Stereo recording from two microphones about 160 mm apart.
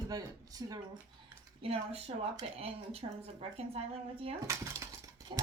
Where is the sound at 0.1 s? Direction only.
25° right (ahead or behind).